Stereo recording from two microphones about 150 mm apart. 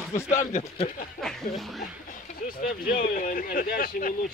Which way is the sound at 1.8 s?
70° left (ahead or behind).